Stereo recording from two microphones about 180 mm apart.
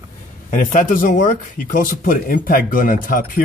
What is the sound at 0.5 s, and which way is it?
Speech, 45° left (ahead or behind).